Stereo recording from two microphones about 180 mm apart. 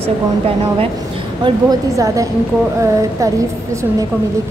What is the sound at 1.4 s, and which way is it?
Speech, 20° right (ahead or behind).